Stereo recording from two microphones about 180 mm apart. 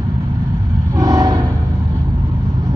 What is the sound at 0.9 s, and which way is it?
Train, 20° right (ahead or behind).